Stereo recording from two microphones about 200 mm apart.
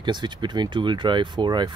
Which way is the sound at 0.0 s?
25° right (ahead or behind).